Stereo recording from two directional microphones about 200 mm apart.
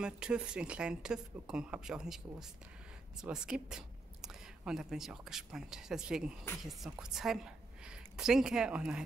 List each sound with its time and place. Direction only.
0.0 s a woman's voice: 5° right (ahead or behind)